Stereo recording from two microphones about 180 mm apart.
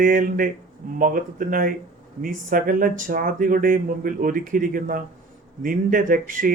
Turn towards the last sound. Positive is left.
turn(degrees=-50)  # may be behind; listen again after turning